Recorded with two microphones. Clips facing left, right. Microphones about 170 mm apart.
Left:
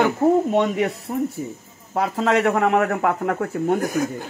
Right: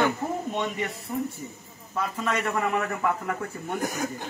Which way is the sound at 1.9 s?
85° left.